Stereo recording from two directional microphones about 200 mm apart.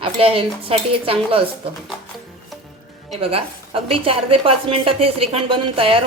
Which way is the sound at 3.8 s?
25° right (ahead or behind).